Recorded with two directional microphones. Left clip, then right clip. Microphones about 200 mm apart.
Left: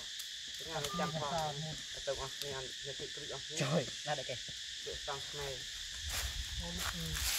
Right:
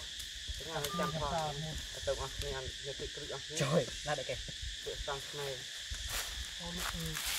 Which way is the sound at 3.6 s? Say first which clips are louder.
Right 3 dB; 15° right (ahead or behind).